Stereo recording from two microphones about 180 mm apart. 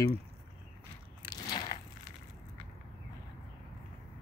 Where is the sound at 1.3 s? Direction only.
20° left (ahead or behind).